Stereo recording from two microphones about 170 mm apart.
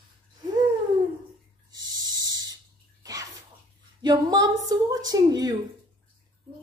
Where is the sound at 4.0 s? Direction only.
25° right (ahead or behind).